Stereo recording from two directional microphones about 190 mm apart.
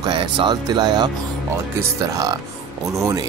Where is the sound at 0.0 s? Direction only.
25° right (ahead or behind).